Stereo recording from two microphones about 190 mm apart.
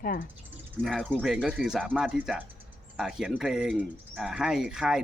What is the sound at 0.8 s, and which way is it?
Speech, centre (ahead or behind).